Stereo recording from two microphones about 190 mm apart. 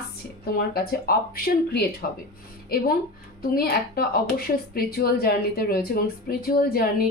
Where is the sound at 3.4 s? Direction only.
50° left (ahead or behind).